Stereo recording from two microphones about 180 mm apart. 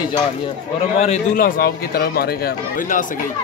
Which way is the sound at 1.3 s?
55° left (ahead or behind).